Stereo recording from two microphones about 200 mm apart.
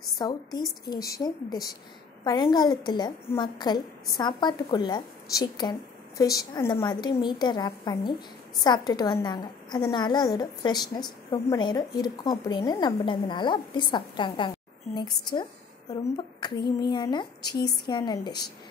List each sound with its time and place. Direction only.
0.2 s a woman's voice: 20° left (ahead or behind)